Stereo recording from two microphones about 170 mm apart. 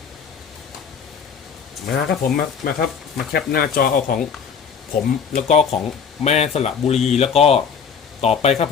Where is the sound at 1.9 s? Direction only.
60° left (ahead or behind).